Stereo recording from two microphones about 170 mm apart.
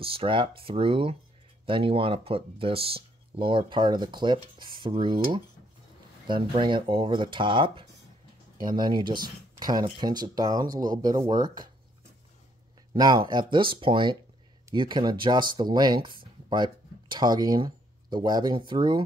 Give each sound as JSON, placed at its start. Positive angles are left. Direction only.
{"t": 0.0, "sound": "speech", "side_deg": -35}
{"t": 12.9, "sound": "speech", "side_deg": -25}